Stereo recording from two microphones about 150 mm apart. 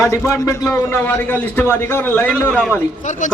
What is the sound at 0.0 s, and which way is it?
A man's voice, 20° left (ahead or behind).